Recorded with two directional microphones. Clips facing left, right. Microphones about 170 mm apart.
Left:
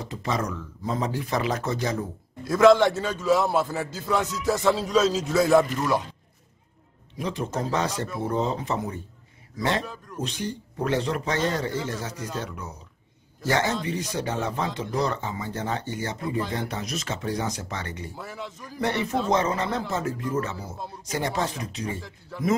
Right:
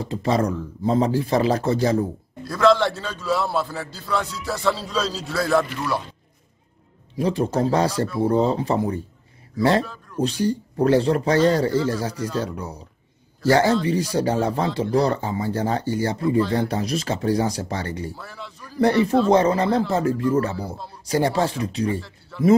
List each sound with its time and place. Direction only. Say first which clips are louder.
0.0 s speech: right 7 dB; 30° right (ahead or behind)
2.4 s a man's voice: left 1 dB; 20° left (ahead or behind)
7.2 s speech: right 8 dB; 35° right (ahead or behind)
18.1 s a man's voice: left 1 dB; 15° left (ahead or behind)
18.8 s speech: right 8 dB; 35° right (ahead or behind)